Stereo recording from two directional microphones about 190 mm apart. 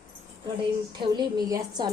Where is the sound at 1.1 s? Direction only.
20° right (ahead or behind).